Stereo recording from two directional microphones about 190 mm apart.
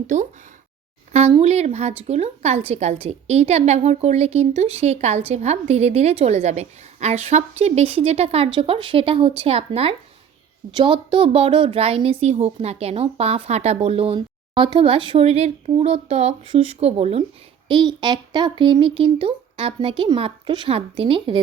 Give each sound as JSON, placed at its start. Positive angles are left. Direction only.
{"t": 1.1, "sound": "a woman's voice", "side_deg": -35}